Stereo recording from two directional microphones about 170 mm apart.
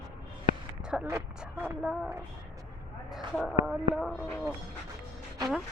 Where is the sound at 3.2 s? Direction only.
Centre (ahead or behind).